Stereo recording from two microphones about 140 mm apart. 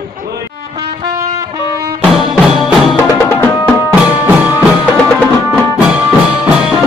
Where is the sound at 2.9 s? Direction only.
20° left (ahead or behind).